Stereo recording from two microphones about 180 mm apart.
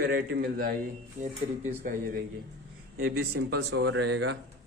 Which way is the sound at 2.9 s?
55° right (ahead or behind).